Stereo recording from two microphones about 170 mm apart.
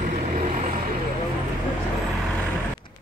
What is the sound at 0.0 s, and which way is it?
Vehicle, 45° right (ahead or behind).